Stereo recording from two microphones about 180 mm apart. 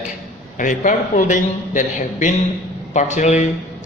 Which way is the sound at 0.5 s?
45° left (ahead or behind).